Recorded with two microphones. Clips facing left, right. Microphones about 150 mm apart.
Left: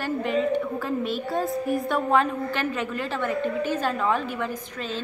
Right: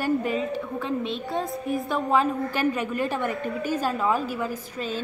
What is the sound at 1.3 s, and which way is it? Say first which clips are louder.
A woman's voice: left 3 dB; centre (ahead or behind).